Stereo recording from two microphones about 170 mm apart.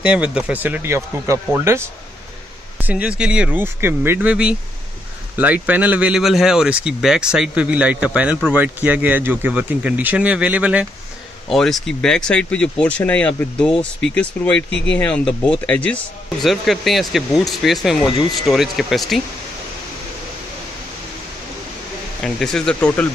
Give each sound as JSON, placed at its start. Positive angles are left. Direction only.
{"t": 0.0, "sound": "speech", "side_deg": -5}
{"t": 14.7, "sound": "speech", "side_deg": 90}
{"t": 15.0, "sound": "speech", "side_deg": 5}
{"t": 22.2, "sound": "speech", "side_deg": 5}